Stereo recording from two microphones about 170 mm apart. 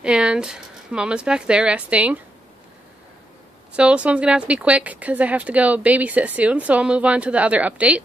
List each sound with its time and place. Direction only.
0.0 s speech: 5° right (ahead or behind)
3.7 s speech: 5° right (ahead or behind)